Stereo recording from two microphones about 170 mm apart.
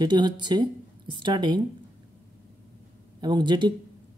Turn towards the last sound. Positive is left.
turn(degrees=-25)  # may be behind; listen again after turning